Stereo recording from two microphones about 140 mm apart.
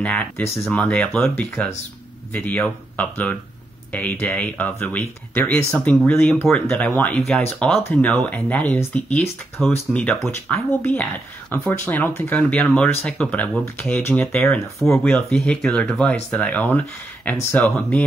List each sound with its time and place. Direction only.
0.0 s speech: 10° left (ahead or behind)
14.8 s speech: centre (ahead or behind)